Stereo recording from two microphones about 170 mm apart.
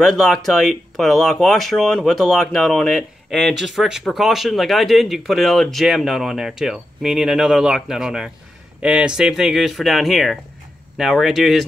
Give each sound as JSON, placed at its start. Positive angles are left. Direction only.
{"t": 0.0, "sound": "speech", "side_deg": 0}